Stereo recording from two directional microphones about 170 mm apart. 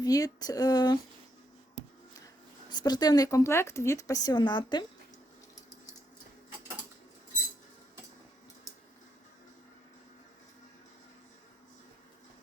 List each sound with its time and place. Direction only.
0.0 s speech: 20° left (ahead or behind)
2.6 s speech: 25° left (ahead or behind)